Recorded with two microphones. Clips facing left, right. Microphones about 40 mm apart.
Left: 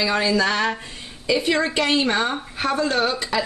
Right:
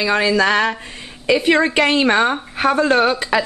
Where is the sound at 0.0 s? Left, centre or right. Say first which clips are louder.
Right 4 dB; right.